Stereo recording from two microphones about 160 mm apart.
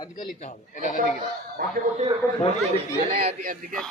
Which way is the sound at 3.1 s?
55° right (ahead or behind).